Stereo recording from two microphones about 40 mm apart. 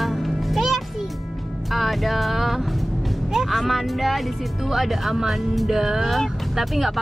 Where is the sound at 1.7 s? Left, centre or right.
Centre.